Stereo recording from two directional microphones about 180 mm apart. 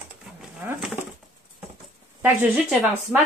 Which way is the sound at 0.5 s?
10° right (ahead or behind).